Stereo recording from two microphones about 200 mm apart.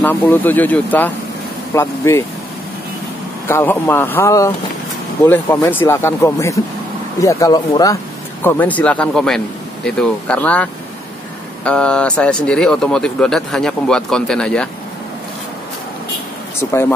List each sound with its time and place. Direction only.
0.0 s speech: 10° left (ahead or behind)
3.4 s speech: 10° left (ahead or behind)